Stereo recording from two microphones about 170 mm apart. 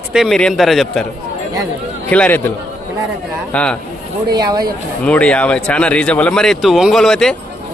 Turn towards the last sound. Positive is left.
turn(degrees=5)  # may be behind; listen again after turning